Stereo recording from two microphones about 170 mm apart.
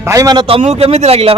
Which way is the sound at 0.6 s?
40° right (ahead or behind).